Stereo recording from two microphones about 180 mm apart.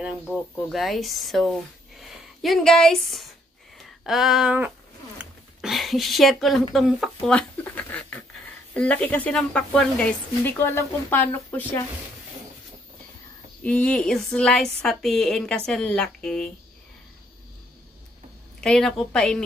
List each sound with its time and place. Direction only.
0.0 s speech: centre (ahead or behind)
3.7 s a sound: centre (ahead or behind)
8.7 s a woman's voice: 5° left (ahead or behind)
13.6 s a woman's voice: 5° left (ahead or behind)
18.6 s a woman's voice: 5° left (ahead or behind)